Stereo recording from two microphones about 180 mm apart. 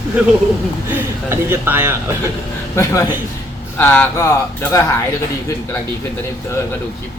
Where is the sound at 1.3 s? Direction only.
15° right (ahead or behind).